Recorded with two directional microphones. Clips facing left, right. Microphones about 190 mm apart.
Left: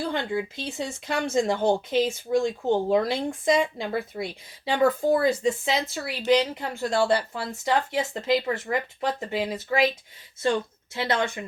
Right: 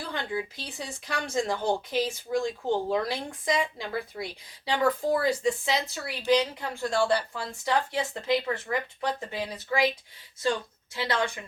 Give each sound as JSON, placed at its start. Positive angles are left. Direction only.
{"t": 0.1, "sound": "speech", "side_deg": 25}
{"t": 10.9, "sound": "speech", "side_deg": 25}